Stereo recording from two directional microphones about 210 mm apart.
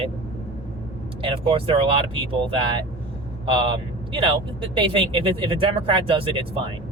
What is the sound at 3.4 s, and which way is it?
Speech, 25° right (ahead or behind).